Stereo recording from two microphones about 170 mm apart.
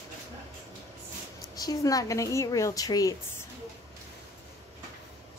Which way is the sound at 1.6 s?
20° left (ahead or behind).